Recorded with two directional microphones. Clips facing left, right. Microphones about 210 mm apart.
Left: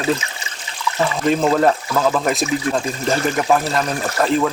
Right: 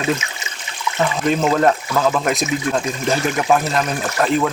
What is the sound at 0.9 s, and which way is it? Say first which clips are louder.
Speech: even; centre (ahead or behind).